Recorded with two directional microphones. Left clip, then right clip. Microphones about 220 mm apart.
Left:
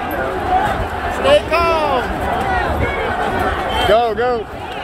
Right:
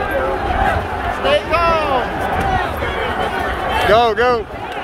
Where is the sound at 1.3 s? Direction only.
40° left (ahead or behind).